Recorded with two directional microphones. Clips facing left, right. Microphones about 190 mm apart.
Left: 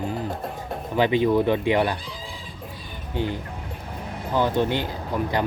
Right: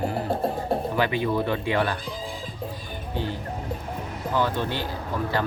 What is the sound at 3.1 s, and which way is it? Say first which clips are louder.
Speech: left 3 dB; 15° left (ahead or behind).